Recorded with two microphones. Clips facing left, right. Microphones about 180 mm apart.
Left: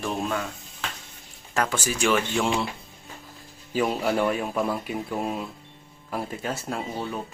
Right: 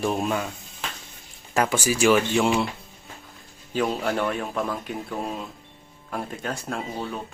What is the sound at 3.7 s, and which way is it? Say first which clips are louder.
Speech: left 1 dB; 5° left (ahead or behind).